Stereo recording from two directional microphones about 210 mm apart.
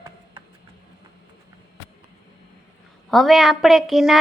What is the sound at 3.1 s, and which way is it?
A woman's voice, centre (ahead or behind).